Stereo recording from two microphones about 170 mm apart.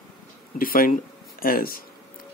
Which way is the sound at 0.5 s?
55° left (ahead or behind).